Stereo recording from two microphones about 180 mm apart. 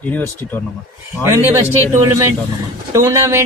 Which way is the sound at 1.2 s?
15° right (ahead or behind).